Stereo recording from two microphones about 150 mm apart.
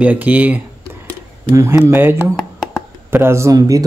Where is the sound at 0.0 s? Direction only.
10° right (ahead or behind).